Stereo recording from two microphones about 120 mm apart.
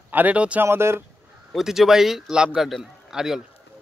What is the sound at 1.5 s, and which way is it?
A man's voice, 5° right (ahead or behind).